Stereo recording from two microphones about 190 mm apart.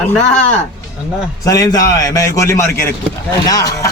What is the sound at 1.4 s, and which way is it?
A man's voice, 20° left (ahead or behind).